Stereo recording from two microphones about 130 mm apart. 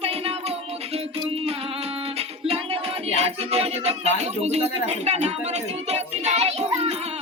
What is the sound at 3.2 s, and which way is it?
Speech, 55° right (ahead or behind).